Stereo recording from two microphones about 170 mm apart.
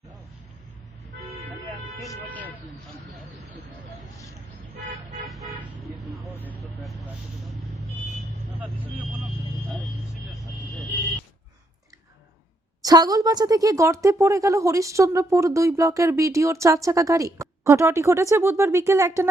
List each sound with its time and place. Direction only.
2.0 s speech: 10° left (ahead or behind)
5.3 s car: centre (ahead or behind)
8.1 s vehicle: 10° right (ahead or behind)
12.8 s a woman's voice: 20° right (ahead or behind)